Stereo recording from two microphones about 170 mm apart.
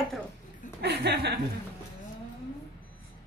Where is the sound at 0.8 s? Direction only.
70° right (ahead or behind).